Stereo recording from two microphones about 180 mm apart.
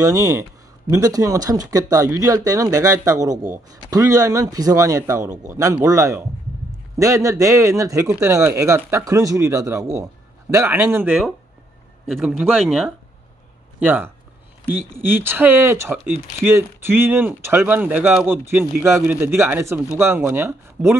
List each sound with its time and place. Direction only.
0.0 s speech: 20° right (ahead or behind); by 12.9 s centre (ahead or behind)
13.7 s speech: 10° right (ahead or behind)